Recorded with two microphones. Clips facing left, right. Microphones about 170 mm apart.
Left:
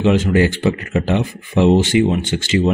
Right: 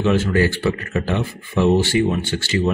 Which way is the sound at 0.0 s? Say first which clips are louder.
Left 3 dB; 20° left (ahead or behind).